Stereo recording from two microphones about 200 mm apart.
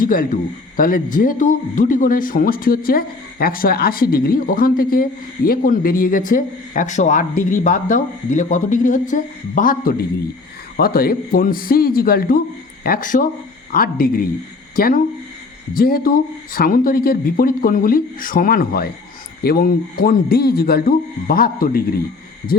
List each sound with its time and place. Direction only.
0.0 s a man's voice: 45° left (ahead or behind)